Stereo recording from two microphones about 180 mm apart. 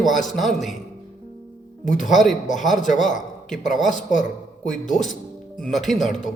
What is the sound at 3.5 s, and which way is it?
Speech, 45° left (ahead or behind).